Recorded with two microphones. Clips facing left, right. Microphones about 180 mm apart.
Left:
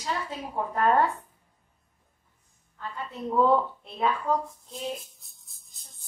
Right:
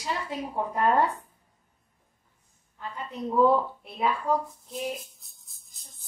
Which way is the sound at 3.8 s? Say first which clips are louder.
Even; 10° right (ahead or behind).